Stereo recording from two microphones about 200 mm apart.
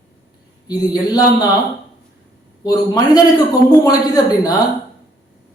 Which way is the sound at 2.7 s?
20° left (ahead or behind).